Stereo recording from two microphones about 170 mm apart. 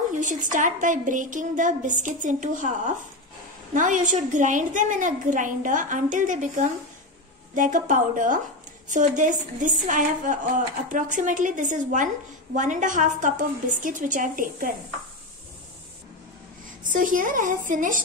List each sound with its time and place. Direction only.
0.2 s a woman's voice: 50° right (ahead or behind)
16.9 s a woman's voice: 50° right (ahead or behind)